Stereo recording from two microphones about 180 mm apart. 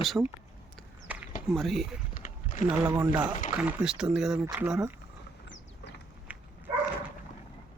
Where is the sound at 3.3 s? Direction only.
45° left (ahead or behind).